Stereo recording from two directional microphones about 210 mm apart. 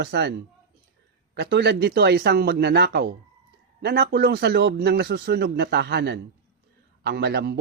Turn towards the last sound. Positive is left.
turn(degrees=-50)  # may be behind; listen again after turning